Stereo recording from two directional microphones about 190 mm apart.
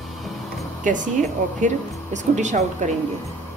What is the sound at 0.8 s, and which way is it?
Speech, 40° right (ahead or behind).